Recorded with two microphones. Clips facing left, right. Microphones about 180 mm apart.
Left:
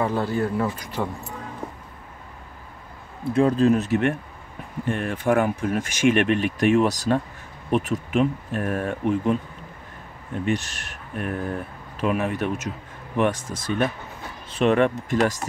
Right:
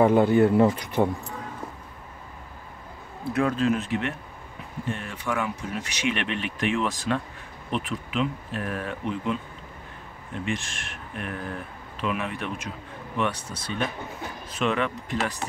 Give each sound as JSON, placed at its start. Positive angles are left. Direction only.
{"t": 0.0, "sound": "speech", "side_deg": -20}
{"t": 3.3, "sound": "speech", "side_deg": 35}
{"t": 10.4, "sound": "speech", "side_deg": 40}